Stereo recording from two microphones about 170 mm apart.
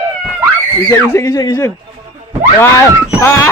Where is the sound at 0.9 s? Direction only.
15° left (ahead or behind).